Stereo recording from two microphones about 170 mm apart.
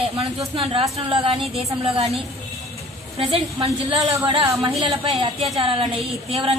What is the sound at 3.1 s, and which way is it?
A woman's voice, 30° right (ahead or behind).